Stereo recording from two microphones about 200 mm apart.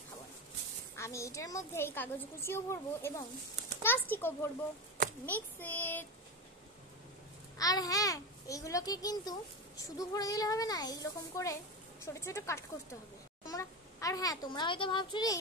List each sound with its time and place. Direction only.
0.9 s a child's voice: 15° left (ahead or behind)
7.5 s a child's voice: 20° left (ahead or behind)